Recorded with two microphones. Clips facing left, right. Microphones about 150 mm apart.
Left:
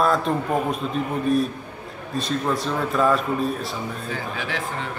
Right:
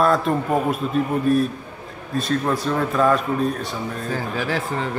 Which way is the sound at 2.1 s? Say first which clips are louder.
Right 2 dB; centre (ahead or behind).